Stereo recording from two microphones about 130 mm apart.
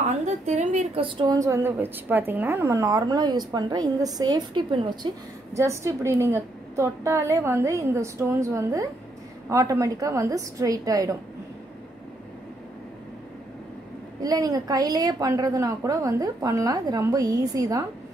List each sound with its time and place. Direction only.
0.0 s a woman's voice: 65° right (ahead or behind)
1.0 s a woman's voice: 40° right (ahead or behind)
1.3 s a woman's voice: 25° right (ahead or behind)
5.5 s a woman's voice: 25° right (ahead or behind)
14.2 s a woman's voice: 30° right (ahead or behind)